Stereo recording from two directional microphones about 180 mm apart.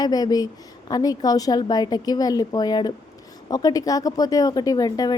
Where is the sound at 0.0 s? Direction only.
20° left (ahead or behind).